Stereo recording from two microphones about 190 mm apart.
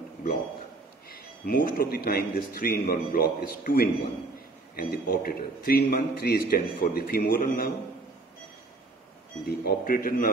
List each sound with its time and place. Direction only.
1.0 s a man's voice: 50° left (ahead or behind)
9.5 s a man's voice: 50° left (ahead or behind)